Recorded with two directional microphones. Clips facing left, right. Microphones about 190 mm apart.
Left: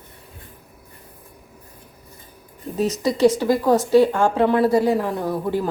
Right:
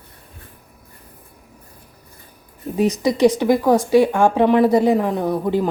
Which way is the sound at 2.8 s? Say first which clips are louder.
Right 2 dB; 15° right (ahead or behind).